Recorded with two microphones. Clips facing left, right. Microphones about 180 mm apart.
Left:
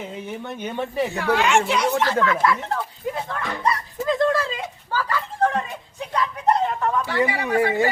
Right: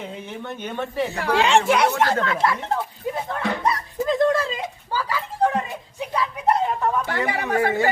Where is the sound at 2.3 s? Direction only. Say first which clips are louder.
Left 1 dB; 30° right (ahead or behind).